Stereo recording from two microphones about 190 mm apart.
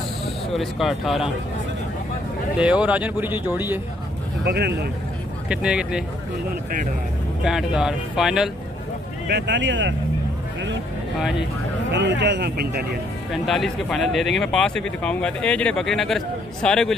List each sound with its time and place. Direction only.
0.6 s speech: centre (ahead or behind)
2.5 s speech: 5° right (ahead or behind)
4.5 s speech: 60° right (ahead or behind)
5.5 s speech: 5° right (ahead or behind)
7.4 s speech: 5° right (ahead or behind)
9.3 s speech: 70° right (ahead or behind)
11.9 s speech: 70° right (ahead or behind)
13.3 s speech: centre (ahead or behind)